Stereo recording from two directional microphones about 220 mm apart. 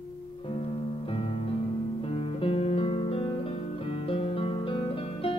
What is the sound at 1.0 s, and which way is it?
Music, 25° left (ahead or behind).